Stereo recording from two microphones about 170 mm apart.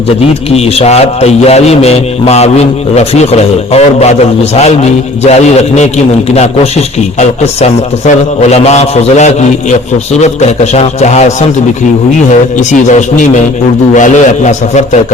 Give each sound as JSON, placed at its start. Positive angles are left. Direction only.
{"t": 0.5, "sound": "a man's voice", "side_deg": 40}
{"t": 7.2, "sound": "a man's voice", "side_deg": 40}
{"t": 12.3, "sound": "a man's voice", "side_deg": 45}